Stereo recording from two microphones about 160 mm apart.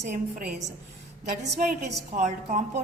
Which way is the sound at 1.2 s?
50° right (ahead or behind).